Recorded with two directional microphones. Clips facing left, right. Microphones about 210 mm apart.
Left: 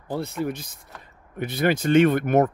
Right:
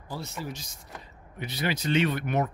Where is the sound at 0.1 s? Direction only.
55° left (ahead or behind).